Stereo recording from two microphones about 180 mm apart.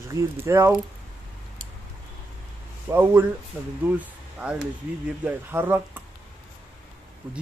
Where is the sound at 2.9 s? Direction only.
10° right (ahead or behind).